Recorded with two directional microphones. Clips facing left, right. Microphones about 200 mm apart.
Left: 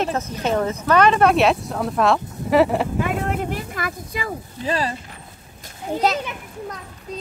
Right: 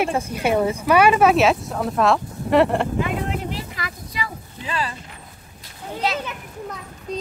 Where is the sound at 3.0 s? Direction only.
50° left (ahead or behind).